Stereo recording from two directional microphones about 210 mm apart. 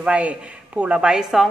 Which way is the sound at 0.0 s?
5° right (ahead or behind).